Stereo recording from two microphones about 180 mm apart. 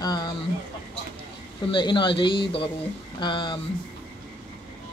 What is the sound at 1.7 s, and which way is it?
Speech, 25° left (ahead or behind).